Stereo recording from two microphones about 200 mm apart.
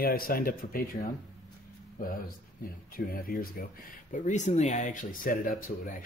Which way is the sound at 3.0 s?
45° left (ahead or behind).